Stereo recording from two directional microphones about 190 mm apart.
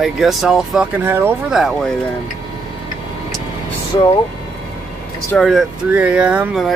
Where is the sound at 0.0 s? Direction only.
Centre (ahead or behind).